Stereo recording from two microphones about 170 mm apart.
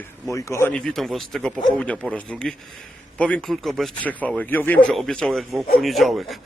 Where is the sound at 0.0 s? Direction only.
15° left (ahead or behind).